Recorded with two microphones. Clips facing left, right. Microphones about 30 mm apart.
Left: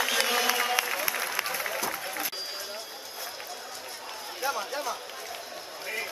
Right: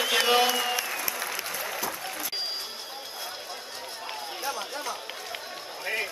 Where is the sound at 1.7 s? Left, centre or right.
Centre.